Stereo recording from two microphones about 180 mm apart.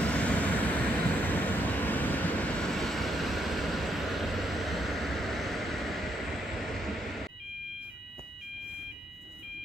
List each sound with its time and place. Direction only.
0.0 s vehicle: 5° left (ahead or behind)